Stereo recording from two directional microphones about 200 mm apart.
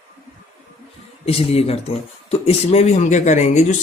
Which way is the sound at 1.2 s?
30° left (ahead or behind).